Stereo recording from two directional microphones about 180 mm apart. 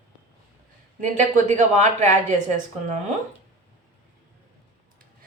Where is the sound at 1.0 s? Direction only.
45° right (ahead or behind).